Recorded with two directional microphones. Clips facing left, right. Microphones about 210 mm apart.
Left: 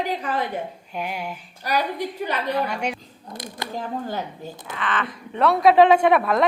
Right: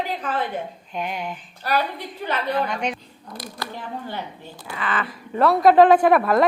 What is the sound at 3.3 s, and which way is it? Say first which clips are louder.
Speech: even; 20° left (ahead or behind).